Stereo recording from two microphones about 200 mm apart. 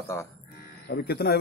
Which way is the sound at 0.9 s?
55° left (ahead or behind).